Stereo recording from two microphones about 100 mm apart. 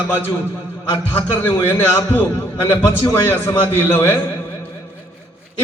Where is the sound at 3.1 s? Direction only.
20° left (ahead or behind).